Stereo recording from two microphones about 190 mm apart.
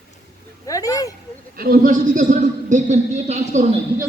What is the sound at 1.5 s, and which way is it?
A man's voice, 50° right (ahead or behind).